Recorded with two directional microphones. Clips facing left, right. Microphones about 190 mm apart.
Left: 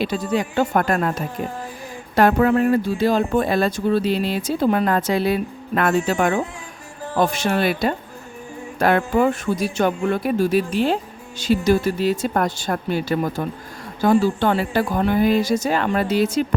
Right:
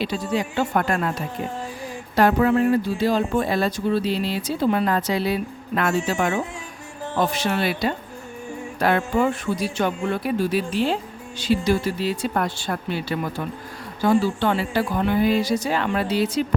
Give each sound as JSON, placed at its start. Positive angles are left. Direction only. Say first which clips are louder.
{"t": 0.0, "sound": "speech", "louder": "left 3 dB", "side_deg": 50}